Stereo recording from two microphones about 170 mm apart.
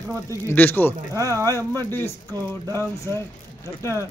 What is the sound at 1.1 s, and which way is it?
Speech, 20° right (ahead or behind).